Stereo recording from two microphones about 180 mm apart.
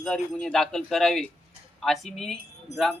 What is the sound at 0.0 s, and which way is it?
Speech, 5° left (ahead or behind).